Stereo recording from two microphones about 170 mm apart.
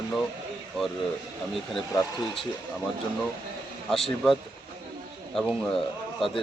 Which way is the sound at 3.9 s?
Centre (ahead or behind).